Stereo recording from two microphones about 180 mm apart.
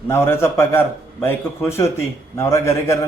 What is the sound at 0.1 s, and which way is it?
A man's voice, 15° left (ahead or behind).